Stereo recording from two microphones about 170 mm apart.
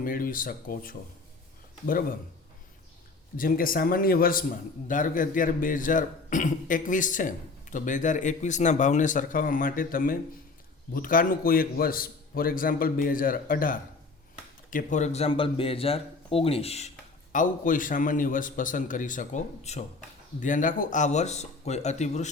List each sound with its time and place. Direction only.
0.0 s a man's voice: 55° left (ahead or behind)
3.3 s a man's voice: 55° left (ahead or behind); by 16.9 s 40° left (ahead or behind)
17.3 s a man's voice: 50° left (ahead or behind)